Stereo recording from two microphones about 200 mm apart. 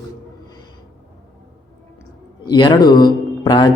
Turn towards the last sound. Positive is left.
turn(degrees=20)  # may be behind; listen again after turning